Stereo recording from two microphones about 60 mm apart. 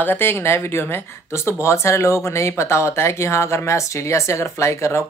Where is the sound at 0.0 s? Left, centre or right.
Left.